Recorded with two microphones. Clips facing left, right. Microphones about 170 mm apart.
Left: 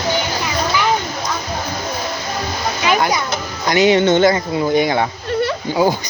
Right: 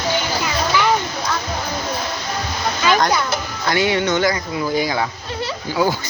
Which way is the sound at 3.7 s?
20° left (ahead or behind).